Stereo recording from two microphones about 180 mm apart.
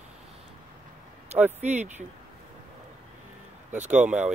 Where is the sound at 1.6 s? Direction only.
40° right (ahead or behind).